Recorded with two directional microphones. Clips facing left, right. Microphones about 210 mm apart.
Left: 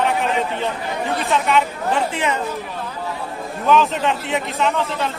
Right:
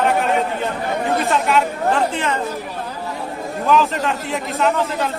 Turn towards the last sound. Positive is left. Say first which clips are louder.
# right 2 dB
turn(degrees=0)  # may be behind; listen again after turning